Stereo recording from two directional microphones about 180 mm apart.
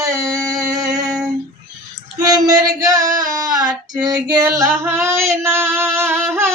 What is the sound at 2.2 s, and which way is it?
Female singing, 20° right (ahead or behind).